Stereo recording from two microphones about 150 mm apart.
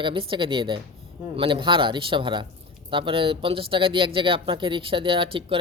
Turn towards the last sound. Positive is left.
turn(degrees=-35)  # may be behind; listen again after turning